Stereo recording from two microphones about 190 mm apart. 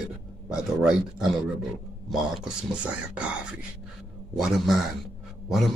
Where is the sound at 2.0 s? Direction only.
5° right (ahead or behind).